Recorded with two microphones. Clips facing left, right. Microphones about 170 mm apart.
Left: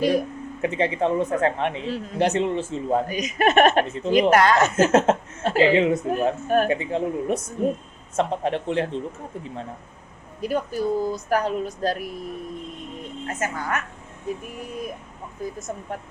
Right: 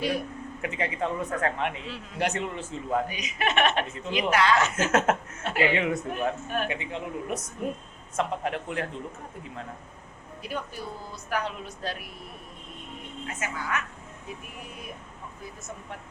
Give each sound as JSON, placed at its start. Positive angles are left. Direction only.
{"t": 0.0, "sound": "a woman's voice", "side_deg": 40}
{"t": 0.6, "sound": "speech", "side_deg": 30}
{"t": 2.1, "sound": "speech", "side_deg": 25}
{"t": 3.1, "sound": "speech", "side_deg": 45}
{"t": 4.7, "sound": "a woman's voice", "side_deg": 30}
{"t": 6.1, "sound": "a woman's voice", "side_deg": 40}
{"t": 10.4, "sound": "a woman's voice", "side_deg": 40}